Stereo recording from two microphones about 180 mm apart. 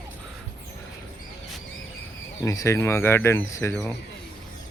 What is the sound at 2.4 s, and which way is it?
Speech, 15° left (ahead or behind).